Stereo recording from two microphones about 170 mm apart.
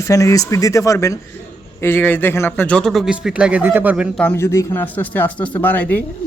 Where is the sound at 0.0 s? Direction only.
20° left (ahead or behind); by 4.1 s 10° right (ahead or behind).